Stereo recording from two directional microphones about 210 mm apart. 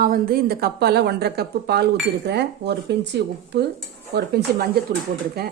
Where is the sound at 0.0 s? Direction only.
45° right (ahead or behind).